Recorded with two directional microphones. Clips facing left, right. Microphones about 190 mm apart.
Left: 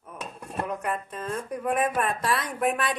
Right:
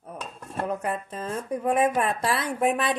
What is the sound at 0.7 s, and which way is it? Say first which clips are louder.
Speech: right 4 dB; 30° right (ahead or behind).